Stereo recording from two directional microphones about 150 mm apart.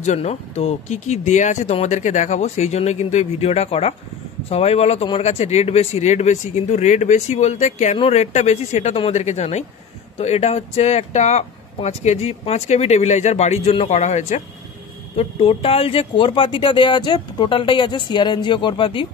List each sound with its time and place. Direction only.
0.0 s speech: 50° left (ahead or behind)
15.1 s speech: 40° left (ahead or behind)